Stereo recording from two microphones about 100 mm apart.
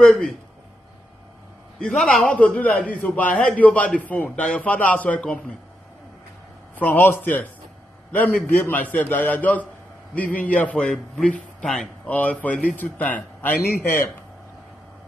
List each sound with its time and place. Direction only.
0.0 s a man's voice: 5° left (ahead or behind)
1.8 s a man's voice: 5° left (ahead or behind)
6.7 s a man's voice: 15° left (ahead or behind)